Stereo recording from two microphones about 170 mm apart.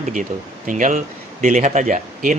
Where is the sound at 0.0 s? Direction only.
45° right (ahead or behind).